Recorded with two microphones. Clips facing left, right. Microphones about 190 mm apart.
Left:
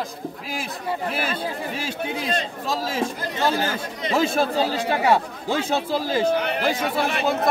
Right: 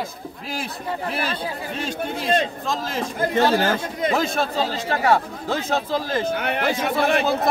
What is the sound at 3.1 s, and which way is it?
Speech, 55° right (ahead or behind).